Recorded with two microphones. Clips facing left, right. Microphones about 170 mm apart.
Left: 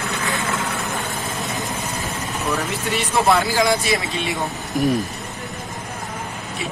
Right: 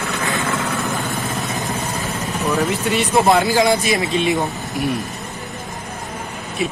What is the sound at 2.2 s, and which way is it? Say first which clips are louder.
Vehicle: right 5 dB; 40° right (ahead or behind).